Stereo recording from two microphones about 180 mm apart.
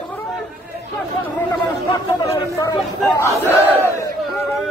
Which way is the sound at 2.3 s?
15° left (ahead or behind).